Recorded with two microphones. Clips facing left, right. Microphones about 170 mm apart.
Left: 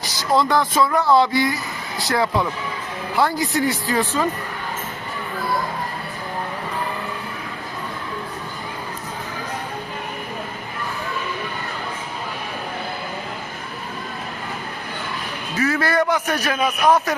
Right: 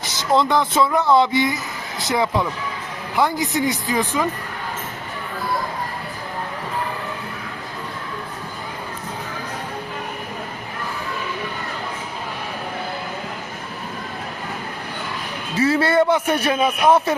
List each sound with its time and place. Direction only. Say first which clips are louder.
0.0 s a man's voice: right 1 dB; 20° right (ahead or behind)
15.5 s a man's voice: right 3 dB; 30° right (ahead or behind)